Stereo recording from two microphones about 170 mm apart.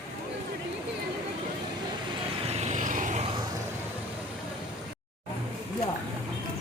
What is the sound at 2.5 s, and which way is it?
Vehicle, 40° right (ahead or behind).